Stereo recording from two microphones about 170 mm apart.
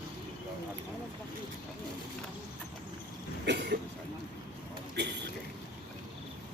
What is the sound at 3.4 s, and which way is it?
Cough, 80° right.